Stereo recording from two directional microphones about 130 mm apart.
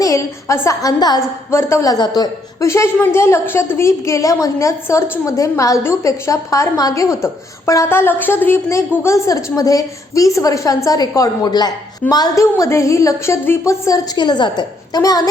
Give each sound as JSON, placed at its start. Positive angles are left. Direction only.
{"t": 0.0, "sound": "a woman's voice", "side_deg": 25}
{"t": 1.5, "sound": "a woman's voice", "side_deg": 20}
{"t": 14.2, "sound": "a woman's voice", "side_deg": 35}